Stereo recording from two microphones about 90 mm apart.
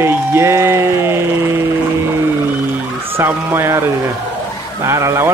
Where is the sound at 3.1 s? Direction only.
25° right (ahead or behind).